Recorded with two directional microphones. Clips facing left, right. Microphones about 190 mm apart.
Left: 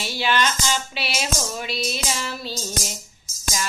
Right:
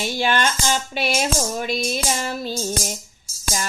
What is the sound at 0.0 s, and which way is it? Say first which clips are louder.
Female singing: right 2 dB; 50° right (ahead or behind).